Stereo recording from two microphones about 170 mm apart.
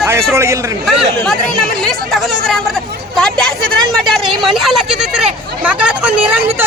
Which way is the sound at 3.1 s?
5° left (ahead or behind).